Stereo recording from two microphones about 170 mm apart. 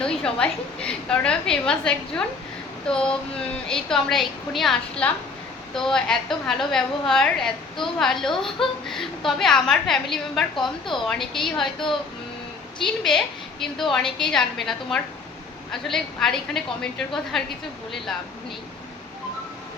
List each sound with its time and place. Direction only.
0.0 s a woman's voice: 5° left (ahead or behind)
10.5 s a woman's voice: 30° left (ahead or behind)
11.1 s a woman's voice: centre (ahead or behind)